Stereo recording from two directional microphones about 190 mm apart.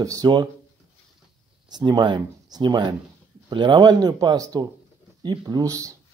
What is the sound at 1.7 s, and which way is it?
Speech, 20° right (ahead or behind).